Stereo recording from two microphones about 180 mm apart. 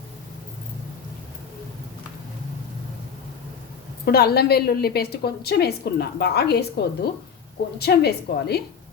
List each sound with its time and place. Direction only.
4.0 s a woman's voice: 60° left (ahead or behind)